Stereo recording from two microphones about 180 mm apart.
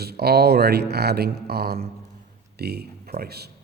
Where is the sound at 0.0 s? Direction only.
60° right (ahead or behind).